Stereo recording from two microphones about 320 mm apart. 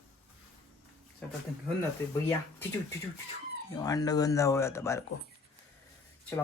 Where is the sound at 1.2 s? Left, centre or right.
Centre.